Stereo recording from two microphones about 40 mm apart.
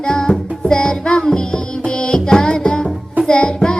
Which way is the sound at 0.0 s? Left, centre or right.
Centre.